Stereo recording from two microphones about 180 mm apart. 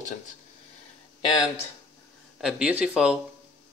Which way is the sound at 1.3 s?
20° left (ahead or behind).